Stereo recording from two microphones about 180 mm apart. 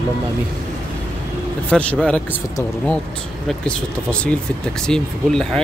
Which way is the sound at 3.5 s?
5° left (ahead or behind).